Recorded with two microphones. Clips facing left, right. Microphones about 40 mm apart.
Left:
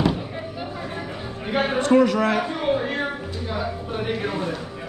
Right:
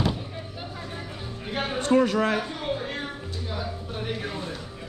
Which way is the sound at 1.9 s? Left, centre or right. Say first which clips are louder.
Left 3 dB; left.